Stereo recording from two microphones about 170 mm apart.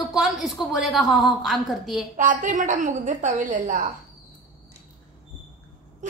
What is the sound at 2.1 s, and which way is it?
A woman's voice, 50° right (ahead or behind).